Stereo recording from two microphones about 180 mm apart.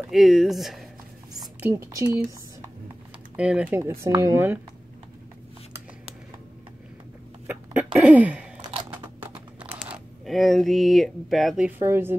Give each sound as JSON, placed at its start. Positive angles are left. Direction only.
{"t": 0.1, "sound": "speech", "side_deg": 0}
{"t": 1.4, "sound": "speech", "side_deg": -10}
{"t": 7.4, "sound": "a sound", "side_deg": -10}
{"t": 9.2, "sound": "typing", "side_deg": -10}
{"t": 11.8, "sound": "speech", "side_deg": -15}